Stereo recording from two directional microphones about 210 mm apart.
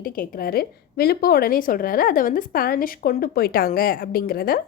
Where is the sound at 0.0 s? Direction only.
45° left (ahead or behind).